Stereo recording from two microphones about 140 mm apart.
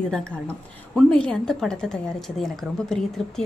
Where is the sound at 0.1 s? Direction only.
5° left (ahead or behind).